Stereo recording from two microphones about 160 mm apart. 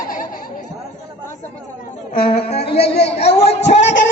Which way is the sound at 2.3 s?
40° left (ahead or behind).